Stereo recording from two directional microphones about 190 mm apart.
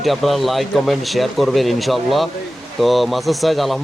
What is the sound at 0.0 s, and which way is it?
A man's voice, centre (ahead or behind).